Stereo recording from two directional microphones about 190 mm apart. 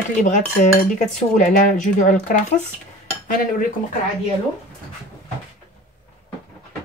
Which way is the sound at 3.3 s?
50° left (ahead or behind).